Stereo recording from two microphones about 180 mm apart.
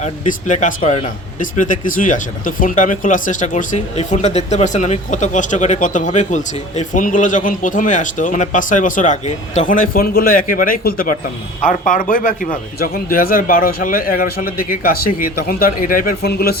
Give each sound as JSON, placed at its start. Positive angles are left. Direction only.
{"t": 0.0, "sound": "speech", "side_deg": 40}